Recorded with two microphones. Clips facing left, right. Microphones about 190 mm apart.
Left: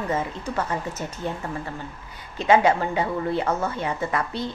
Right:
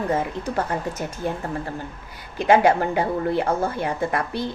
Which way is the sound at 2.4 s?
40° right (ahead or behind).